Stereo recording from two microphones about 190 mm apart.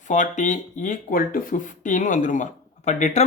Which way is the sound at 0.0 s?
40° left (ahead or behind).